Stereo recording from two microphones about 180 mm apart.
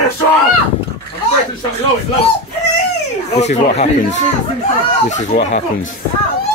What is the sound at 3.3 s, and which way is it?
Speech, 40° left (ahead or behind).